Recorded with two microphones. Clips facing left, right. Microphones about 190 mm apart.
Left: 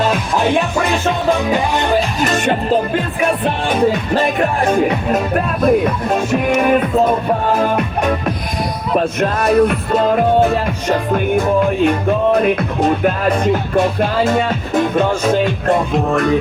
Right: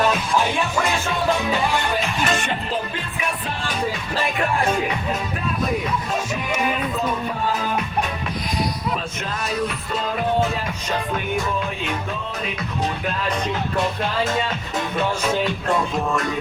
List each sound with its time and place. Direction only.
2.0 s music: 45° left (ahead or behind)
11.3 s music: 55° left (ahead or behind)